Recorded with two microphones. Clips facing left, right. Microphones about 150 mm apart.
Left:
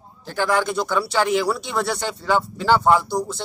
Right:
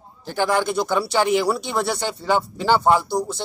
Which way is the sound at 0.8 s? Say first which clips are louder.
Right 1 dB; 25° right (ahead or behind).